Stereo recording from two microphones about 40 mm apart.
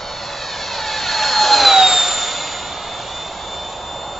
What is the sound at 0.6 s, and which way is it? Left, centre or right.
Vehicle, centre.